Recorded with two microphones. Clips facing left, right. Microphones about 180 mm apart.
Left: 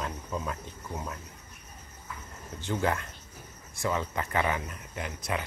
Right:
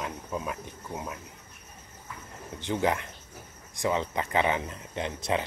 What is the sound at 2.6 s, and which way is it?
Cricket, 15° right (ahead or behind).